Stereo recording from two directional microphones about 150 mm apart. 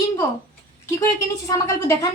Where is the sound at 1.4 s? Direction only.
20° left (ahead or behind).